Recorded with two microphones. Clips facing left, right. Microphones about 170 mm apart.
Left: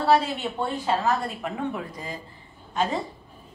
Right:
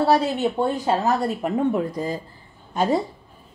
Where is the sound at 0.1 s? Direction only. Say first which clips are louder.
Right 3 dB; 40° right (ahead or behind).